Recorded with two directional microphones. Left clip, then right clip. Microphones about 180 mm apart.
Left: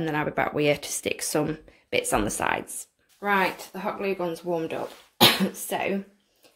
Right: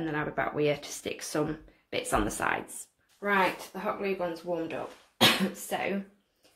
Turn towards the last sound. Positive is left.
turn(degrees=55)  # may be behind; listen again after turning